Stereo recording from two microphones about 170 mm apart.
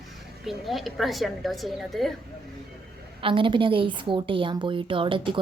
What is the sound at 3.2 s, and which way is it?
A woman's voice, 30° right (ahead or behind).